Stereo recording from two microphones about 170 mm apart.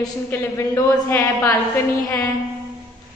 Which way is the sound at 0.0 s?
15° left (ahead or behind).